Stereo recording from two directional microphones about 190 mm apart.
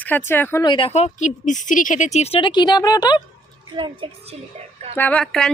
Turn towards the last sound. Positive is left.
turn(degrees=5)  # may be behind; listen again after turning